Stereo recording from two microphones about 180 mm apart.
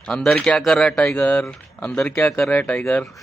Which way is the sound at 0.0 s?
5° left (ahead or behind).